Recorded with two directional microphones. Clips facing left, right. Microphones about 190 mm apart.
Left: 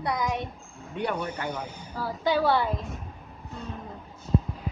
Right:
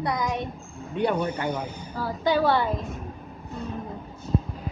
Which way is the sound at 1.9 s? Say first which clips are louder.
Right 2 dB; 5° left (ahead or behind).